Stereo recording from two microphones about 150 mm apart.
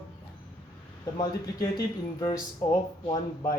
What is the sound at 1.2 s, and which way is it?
Speech, 25° left (ahead or behind).